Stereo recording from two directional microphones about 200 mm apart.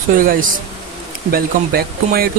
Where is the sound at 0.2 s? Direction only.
45° right (ahead or behind).